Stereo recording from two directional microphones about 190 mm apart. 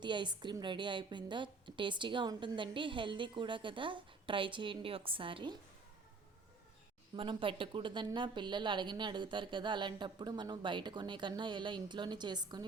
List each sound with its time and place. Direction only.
0.0 s a woman's voice: 25° right (ahead or behind)
7.2 s a woman's voice: 25° right (ahead or behind)